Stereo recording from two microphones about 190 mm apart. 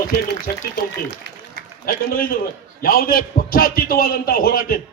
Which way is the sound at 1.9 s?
50° left (ahead or behind).